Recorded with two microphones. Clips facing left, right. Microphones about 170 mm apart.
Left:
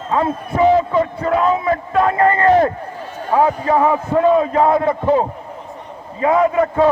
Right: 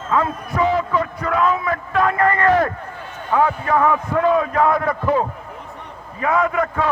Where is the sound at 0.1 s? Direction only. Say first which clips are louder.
Left 2 dB; 30° left (ahead or behind).